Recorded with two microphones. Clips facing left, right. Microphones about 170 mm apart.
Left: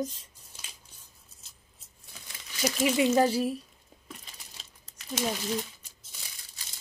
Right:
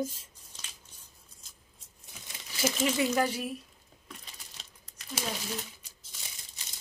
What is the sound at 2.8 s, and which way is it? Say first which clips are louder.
Speech: left 6 dB; 20° left (ahead or behind).